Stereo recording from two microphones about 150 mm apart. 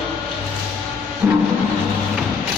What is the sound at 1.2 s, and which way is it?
Vehicle, 15° right (ahead or behind).